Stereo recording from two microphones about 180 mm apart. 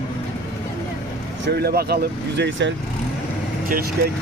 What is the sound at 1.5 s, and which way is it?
Speech, 60° right (ahead or behind).